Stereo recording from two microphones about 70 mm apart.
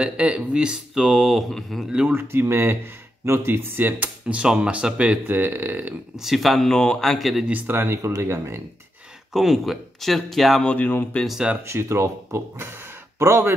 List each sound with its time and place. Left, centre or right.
0.0 s speech: centre
1.9 s speech: centre
2.1 s speech: right
4.3 s speech: centre
5.3 s speech: right
6.1 s speech: centre
7.4 s speech: right
9.3 s speech: centre
10.6 s speech: centre
11.6 s speech: right